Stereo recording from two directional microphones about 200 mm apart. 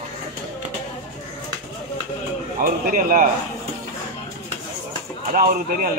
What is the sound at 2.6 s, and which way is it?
Speech, 45° right (ahead or behind).